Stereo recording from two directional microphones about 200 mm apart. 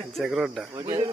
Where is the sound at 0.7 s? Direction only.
20° right (ahead or behind).